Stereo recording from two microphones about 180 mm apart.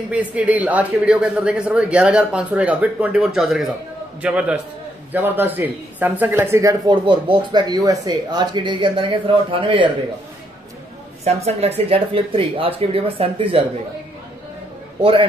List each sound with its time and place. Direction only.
0.1 s a man's voice: 5° right (ahead or behind); by 9.8 s 30° right (ahead or behind)
11.2 s speech: 35° right (ahead or behind)